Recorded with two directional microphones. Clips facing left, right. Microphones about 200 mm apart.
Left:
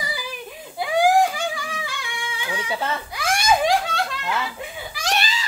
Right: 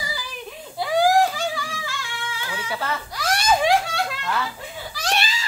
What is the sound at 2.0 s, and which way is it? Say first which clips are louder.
Child singing: even; 15° left (ahead or behind).